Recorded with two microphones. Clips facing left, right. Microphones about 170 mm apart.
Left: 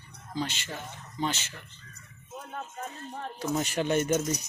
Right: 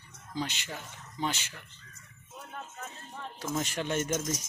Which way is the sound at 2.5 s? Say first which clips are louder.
Left 4 dB; 35° left (ahead or behind).